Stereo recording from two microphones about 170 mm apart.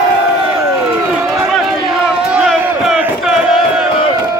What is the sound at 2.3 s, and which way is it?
Battle cry, 5° right (ahead or behind).